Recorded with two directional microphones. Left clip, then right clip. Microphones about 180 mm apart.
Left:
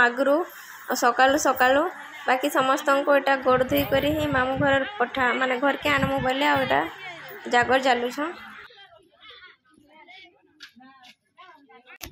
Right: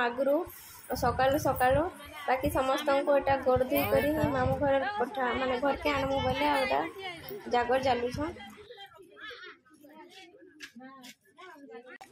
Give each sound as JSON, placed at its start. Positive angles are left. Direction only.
{"t": 0.8, "sound": "a woman's voice", "side_deg": 30}
{"t": 6.6, "sound": "a woman's voice", "side_deg": 35}